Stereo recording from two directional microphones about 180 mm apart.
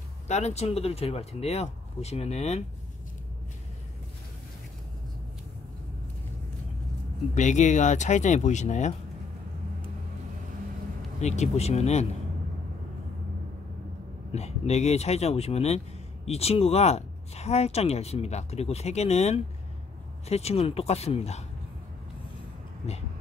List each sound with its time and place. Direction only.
0.3 s speech: 40° left (ahead or behind)
7.3 s speech: 40° left (ahead or behind)
11.1 s speech: 40° left (ahead or behind)
14.3 s speech: 35° left (ahead or behind)